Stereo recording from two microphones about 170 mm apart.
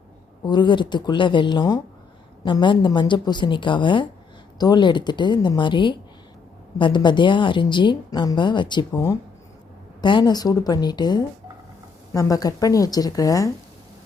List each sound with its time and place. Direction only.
0.4 s a woman's voice: 25° left (ahead or behind)
10.0 s a woman's voice: 25° left (ahead or behind)